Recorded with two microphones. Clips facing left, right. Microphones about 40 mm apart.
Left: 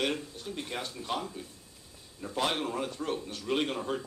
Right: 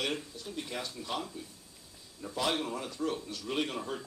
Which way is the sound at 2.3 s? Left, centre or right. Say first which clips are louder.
Left 2 dB; left.